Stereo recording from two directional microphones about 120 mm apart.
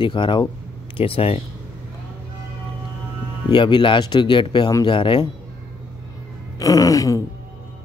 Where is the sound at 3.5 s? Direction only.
40° left (ahead or behind).